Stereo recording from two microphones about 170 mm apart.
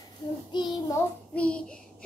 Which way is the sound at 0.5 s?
25° left (ahead or behind).